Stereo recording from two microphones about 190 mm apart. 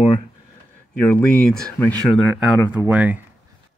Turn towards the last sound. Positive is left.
turn(degrees=-10)  # may be behind; listen again after turning